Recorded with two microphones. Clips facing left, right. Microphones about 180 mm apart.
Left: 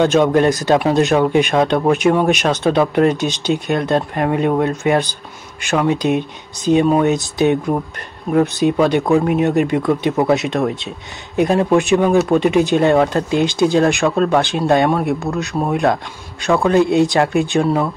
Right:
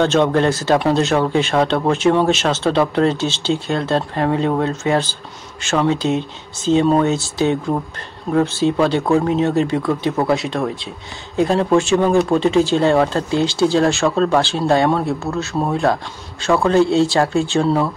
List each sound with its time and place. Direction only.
0.0 s speech: 15° left (ahead or behind)